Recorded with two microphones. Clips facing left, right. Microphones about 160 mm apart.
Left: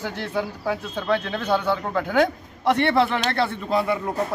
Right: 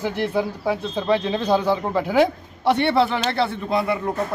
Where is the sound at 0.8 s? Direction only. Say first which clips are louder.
Right 4 dB; 25° right (ahead or behind).